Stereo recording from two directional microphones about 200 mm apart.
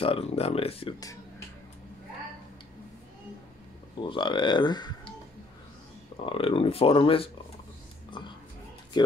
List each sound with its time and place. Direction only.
0.0 s speech: 30° left (ahead or behind)
4.0 s speech: 25° left (ahead or behind)
6.2 s speech: 25° left (ahead or behind)